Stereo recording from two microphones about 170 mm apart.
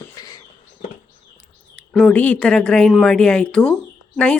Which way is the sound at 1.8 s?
5° left (ahead or behind).